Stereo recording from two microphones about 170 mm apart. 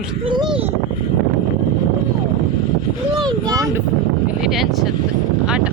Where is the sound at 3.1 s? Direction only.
20° right (ahead or behind).